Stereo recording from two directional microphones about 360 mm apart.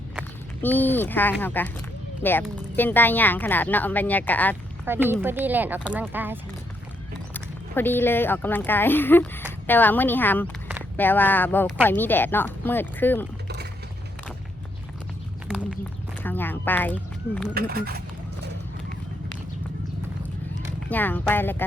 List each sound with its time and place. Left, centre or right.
0.2 s speech: centre
4.9 s speech: centre
7.3 s speech: centre
15.4 s a sound: centre
16.2 s speech: centre
17.5 s speech: right
20.9 s speech: centre